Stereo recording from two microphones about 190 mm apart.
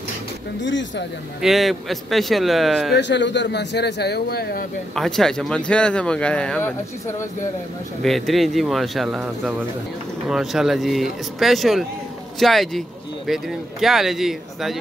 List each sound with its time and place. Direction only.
0.6 s speech: 70° left (ahead or behind)
1.4 s speech: centre (ahead or behind)
2.9 s a man's voice: 65° left (ahead or behind)
4.9 s speech: centre (ahead or behind)
8.0 s speech: centre (ahead or behind)